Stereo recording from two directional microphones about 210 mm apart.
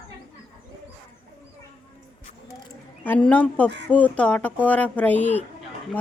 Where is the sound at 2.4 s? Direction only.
10° left (ahead or behind).